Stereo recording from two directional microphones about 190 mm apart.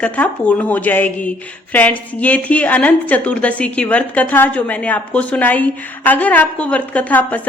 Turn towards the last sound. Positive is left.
turn(degrees=10)  # may be behind; listen again after turning